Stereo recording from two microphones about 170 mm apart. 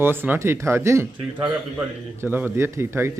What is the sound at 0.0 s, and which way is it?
A man's voice, 10° right (ahead or behind).